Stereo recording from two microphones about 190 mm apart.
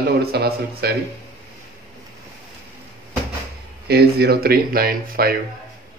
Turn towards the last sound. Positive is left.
turn(degrees=-50)  # may be behind; listen again after turning